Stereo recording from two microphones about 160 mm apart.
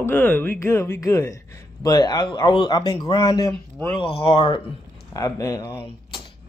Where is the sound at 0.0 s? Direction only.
10° left (ahead or behind).